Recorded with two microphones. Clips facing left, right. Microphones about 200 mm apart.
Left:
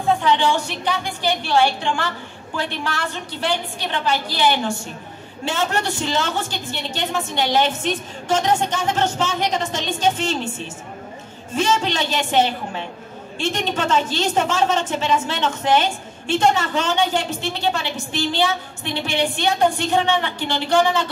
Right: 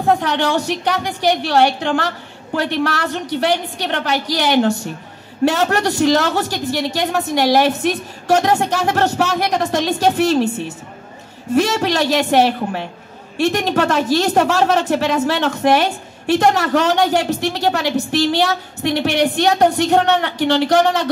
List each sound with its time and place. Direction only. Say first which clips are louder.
0.0 s a woman's voice: right 2 dB; 65° right (ahead or behind)
11.5 s a woman's voice: right 5 dB; 65° right (ahead or behind)